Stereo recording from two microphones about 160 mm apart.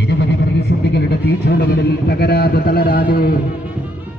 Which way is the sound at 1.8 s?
90° left.